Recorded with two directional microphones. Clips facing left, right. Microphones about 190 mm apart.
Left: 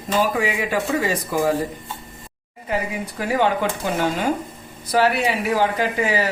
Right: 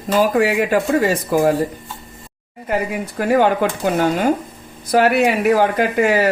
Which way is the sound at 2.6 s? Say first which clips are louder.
Right 4 dB; 55° right (ahead or behind).